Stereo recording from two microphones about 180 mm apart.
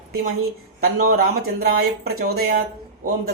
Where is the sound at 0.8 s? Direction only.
55° right (ahead or behind).